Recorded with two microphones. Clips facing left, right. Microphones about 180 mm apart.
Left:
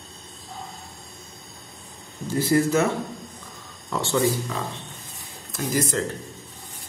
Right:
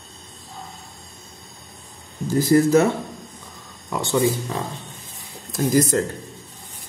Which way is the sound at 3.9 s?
15° right (ahead or behind).